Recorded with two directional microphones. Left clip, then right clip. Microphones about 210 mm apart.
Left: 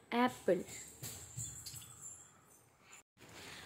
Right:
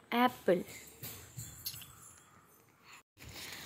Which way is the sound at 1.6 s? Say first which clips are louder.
Right 6 dB; 40° right (ahead or behind).